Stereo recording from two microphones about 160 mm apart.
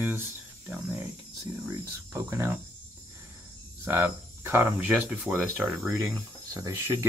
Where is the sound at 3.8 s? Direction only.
15° right (ahead or behind).